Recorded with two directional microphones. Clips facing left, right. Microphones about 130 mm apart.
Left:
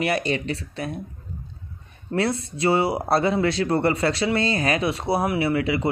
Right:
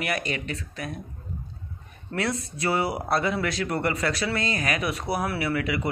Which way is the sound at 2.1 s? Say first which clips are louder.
Left 5 dB; 30° left (ahead or behind).